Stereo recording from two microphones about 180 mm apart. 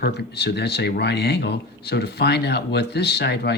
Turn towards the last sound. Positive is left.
turn(degrees=65)  # may be behind; listen again after turning